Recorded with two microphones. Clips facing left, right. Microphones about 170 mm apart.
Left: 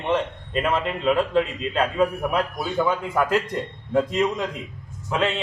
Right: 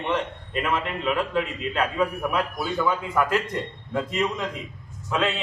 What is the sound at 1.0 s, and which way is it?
A man's voice, 30° left (ahead or behind).